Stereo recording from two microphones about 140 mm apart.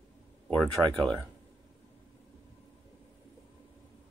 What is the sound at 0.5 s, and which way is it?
Speech, 5° left (ahead or behind).